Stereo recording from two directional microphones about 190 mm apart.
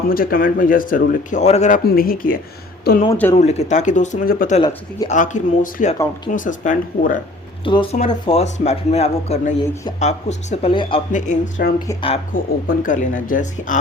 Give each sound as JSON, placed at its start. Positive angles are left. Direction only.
{"t": 0.1, "sound": "speech", "side_deg": 50}
{"t": 1.8, "sound": "speech", "side_deg": 50}
{"t": 3.1, "sound": "speech", "side_deg": 10}
{"t": 3.3, "sound": "speech", "side_deg": 35}
{"t": 4.5, "sound": "speech", "side_deg": 25}
{"t": 5.0, "sound": "speech", "side_deg": 40}
{"t": 7.6, "sound": "speech", "side_deg": 25}
{"t": 11.1, "sound": "speech", "side_deg": 40}